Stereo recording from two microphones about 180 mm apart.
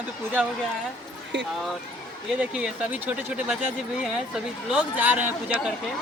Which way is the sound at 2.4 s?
5° right (ahead or behind).